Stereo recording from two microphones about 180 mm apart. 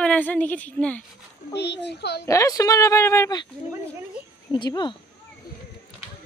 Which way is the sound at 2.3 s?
20° left (ahead or behind).